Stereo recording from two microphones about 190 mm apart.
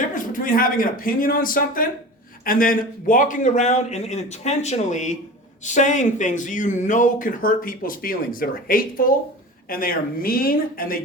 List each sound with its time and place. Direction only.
0.1 s a man's voice: 45° left (ahead or behind)